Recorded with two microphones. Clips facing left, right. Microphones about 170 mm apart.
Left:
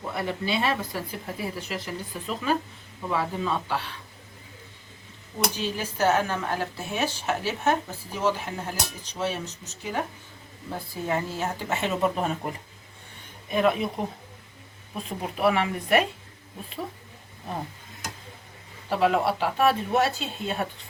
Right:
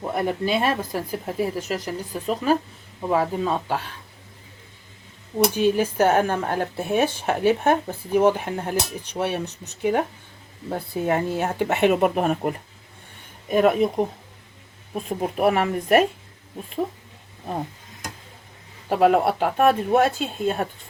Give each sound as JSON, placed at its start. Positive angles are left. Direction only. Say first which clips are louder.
{"t": 0.0, "sound": "speech", "louder": "right 6 dB", "side_deg": -45}
{"t": 5.5, "sound": "speech", "louder": "right 10 dB", "side_deg": -55}
{"t": 13.5, "sound": "speech", "louder": "right 5 dB", "side_deg": -45}
{"t": 15.2, "sound": "speech", "louder": "right 3 dB", "side_deg": -45}
{"t": 18.9, "sound": "speech", "louder": "right 5 dB", "side_deg": -50}